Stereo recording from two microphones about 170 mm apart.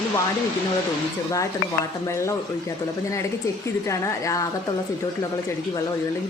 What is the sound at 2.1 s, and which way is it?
Speech, 15° left (ahead or behind).